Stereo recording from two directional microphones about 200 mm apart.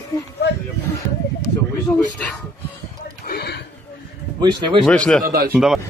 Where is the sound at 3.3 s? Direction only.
50° left (ahead or behind).